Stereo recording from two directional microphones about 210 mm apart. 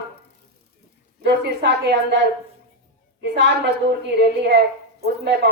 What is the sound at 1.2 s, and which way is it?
Speech, 55° right (ahead or behind).